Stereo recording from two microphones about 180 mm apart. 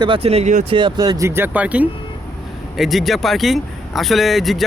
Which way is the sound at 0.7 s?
25° right (ahead or behind).